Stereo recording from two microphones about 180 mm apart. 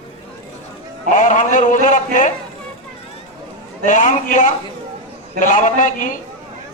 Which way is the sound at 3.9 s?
45° left (ahead or behind).